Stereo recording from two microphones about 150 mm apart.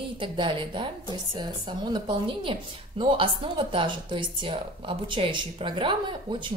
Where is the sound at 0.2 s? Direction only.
35° right (ahead or behind).